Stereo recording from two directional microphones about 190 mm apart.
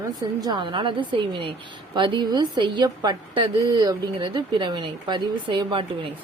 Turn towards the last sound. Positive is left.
turn(degrees=-25)  # may be behind; listen again after turning